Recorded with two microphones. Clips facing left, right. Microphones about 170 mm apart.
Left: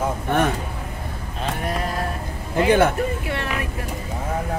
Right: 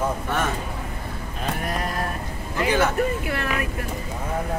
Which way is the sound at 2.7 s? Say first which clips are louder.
Left 5 dB; 55° left (ahead or behind).